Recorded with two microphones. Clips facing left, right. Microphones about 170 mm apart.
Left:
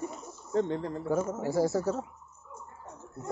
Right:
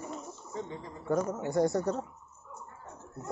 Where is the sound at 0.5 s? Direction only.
70° left (ahead or behind).